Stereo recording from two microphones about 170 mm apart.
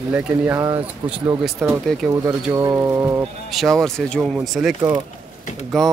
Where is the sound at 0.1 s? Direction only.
10° right (ahead or behind).